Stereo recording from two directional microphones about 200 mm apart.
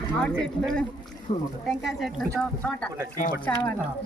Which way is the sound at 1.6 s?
Centre (ahead or behind).